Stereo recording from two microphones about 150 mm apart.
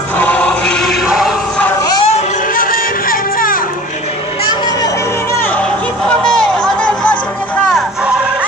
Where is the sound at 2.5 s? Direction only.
70° left (ahead or behind).